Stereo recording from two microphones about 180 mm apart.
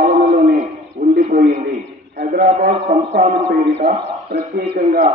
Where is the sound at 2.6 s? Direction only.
45° right (ahead or behind).